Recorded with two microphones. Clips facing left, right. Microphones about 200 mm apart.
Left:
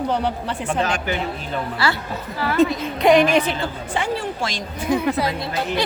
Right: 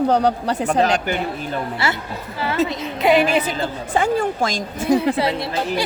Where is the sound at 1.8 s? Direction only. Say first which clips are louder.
Left 2 dB; 25° right (ahead or behind).